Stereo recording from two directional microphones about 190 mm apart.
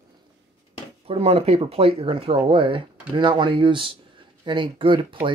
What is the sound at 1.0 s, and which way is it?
Speech, 30° right (ahead or behind).